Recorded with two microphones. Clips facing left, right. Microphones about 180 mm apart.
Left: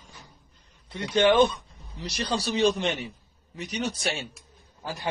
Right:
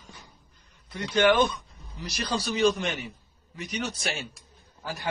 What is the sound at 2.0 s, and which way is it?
A man's voice, 35° left (ahead or behind).